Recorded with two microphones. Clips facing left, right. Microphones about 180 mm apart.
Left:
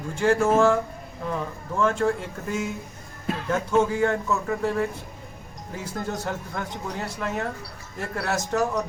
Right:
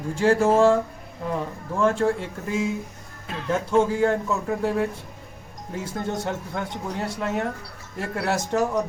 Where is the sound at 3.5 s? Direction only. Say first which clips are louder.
Right 2 dB; 30° right (ahead or behind).